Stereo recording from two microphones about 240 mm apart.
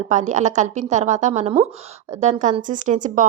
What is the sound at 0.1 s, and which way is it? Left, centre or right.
A woman's voice, right.